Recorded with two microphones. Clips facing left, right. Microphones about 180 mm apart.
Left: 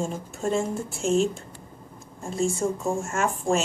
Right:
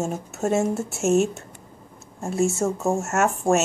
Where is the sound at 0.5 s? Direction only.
75° right (ahead or behind).